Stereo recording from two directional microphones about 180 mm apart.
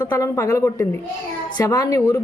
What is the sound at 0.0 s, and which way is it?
A man's voice, 15° left (ahead or behind).